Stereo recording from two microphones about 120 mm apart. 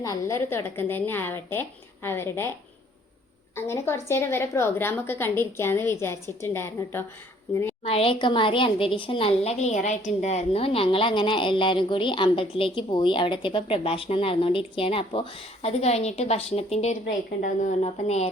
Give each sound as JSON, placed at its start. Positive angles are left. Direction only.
{"t": 0.0, "sound": "a woman's voice", "side_deg": 25}
{"t": 3.5, "sound": "a woman's voice", "side_deg": 20}
{"t": 7.9, "sound": "a woman's voice", "side_deg": 50}
{"t": 17.6, "sound": "a woman's voice", "side_deg": 80}